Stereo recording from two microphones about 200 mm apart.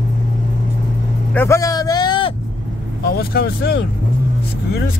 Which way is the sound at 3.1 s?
50° left (ahead or behind).